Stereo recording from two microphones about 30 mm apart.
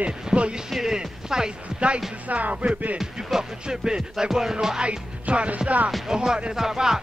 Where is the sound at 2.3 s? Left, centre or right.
Right.